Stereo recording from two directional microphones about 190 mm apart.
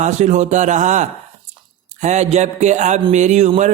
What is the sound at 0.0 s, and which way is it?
Speech, 35° right (ahead or behind).